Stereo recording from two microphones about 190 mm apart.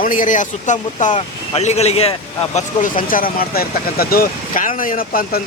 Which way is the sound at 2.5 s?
45° left (ahead or behind).